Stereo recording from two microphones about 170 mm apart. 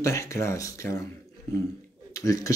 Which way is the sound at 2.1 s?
20° left (ahead or behind).